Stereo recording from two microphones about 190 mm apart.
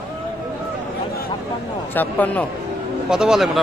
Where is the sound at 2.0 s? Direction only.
10° left (ahead or behind).